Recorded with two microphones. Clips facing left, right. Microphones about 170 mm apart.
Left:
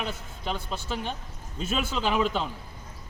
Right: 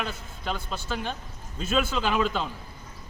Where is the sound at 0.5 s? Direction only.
20° left (ahead or behind).